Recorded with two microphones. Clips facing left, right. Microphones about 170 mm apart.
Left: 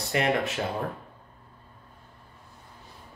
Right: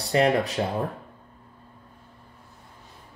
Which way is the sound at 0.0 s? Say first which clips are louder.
Right 4 dB; 35° right (ahead or behind).